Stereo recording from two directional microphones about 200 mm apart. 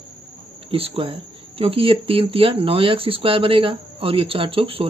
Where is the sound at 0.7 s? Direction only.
30° right (ahead or behind).